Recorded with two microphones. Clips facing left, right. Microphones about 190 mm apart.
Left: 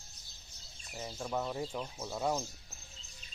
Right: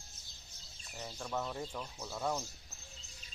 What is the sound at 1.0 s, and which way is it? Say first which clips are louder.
Speech: left 3 dB; 15° left (ahead or behind).